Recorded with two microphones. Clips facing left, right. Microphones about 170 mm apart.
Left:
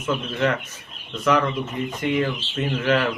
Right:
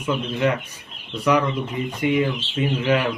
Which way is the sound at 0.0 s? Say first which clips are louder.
Right 1 dB; 10° right (ahead or behind).